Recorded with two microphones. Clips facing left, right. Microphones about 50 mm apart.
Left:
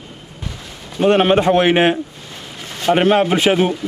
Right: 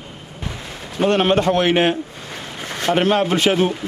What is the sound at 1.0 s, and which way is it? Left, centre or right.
A man's voice, centre.